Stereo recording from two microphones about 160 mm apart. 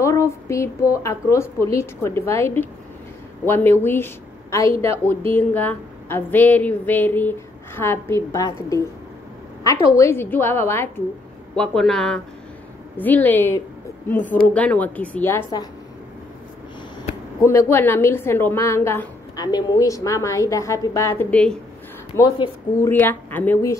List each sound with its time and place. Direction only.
0.0 s a woman's voice: 20° left (ahead or behind)
9.6 s a woman's voice: 20° left (ahead or behind)
11.5 s a woman's voice: 5° left (ahead or behind)
17.5 s a woman's voice: 15° left (ahead or behind)
22.1 s a woman's voice: 25° left (ahead or behind)
22.8 s a woman's voice: 10° left (ahead or behind)